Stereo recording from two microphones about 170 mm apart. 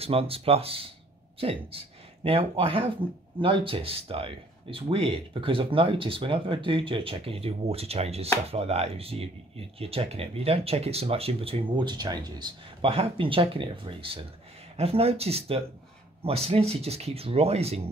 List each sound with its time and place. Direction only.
0.0 s speech: 35° right (ahead or behind)